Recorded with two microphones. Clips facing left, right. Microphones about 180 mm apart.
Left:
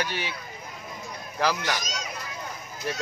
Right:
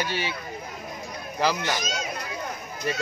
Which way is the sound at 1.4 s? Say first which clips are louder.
Right 1 dB; 10° right (ahead or behind).